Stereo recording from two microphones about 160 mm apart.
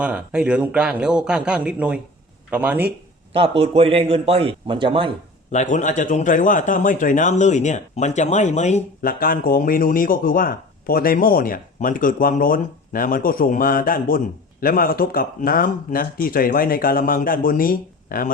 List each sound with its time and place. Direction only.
0.0 s a man's voice: 5° right (ahead or behind)
3.6 s speech: 35° right (ahead or behind)
5.5 s a man's voice: 50° left (ahead or behind)
9.0 s speech: 65° left (ahead or behind)